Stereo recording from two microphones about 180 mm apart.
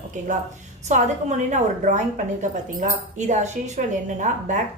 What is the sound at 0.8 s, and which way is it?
A woman's voice, 40° right (ahead or behind).